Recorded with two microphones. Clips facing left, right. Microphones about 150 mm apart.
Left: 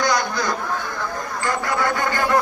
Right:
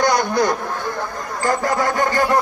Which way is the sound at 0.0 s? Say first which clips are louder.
Right 4 dB; 60° right (ahead or behind).